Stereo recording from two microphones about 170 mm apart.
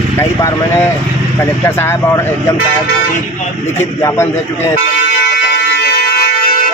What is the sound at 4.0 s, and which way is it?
Speech, 15° left (ahead or behind).